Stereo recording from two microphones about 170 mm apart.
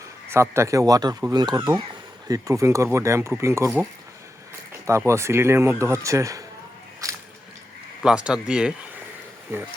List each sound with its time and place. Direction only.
0.3 s speech: 15° right (ahead or behind)
4.9 s speech: 15° right (ahead or behind)
7.0 s squish: 20° right (ahead or behind)
8.0 s speech: 5° right (ahead or behind)